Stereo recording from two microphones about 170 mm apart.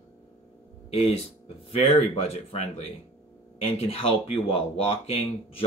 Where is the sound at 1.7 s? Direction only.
35° left (ahead or behind).